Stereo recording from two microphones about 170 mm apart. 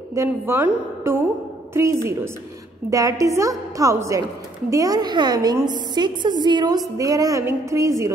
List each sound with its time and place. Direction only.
0.1 s a woman's voice: 15° right (ahead or behind)